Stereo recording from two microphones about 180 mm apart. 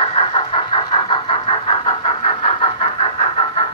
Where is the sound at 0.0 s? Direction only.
35° left (ahead or behind).